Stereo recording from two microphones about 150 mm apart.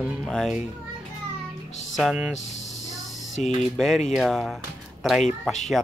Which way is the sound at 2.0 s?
5° right (ahead or behind).